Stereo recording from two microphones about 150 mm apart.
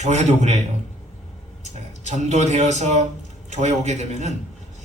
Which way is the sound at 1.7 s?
50° right (ahead or behind).